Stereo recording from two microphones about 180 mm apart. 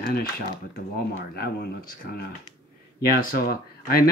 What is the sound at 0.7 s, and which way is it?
Speech, 60° left (ahead or behind).